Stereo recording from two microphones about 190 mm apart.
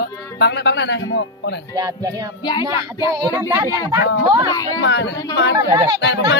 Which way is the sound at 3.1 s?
20° right (ahead or behind).